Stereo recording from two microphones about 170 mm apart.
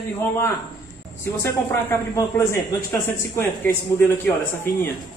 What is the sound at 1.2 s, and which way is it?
A man's voice, 15° left (ahead or behind).